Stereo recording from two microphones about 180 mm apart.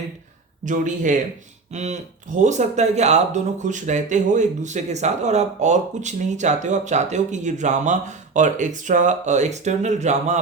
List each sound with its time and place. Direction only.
0.6 s a man's voice: 45° right (ahead or behind)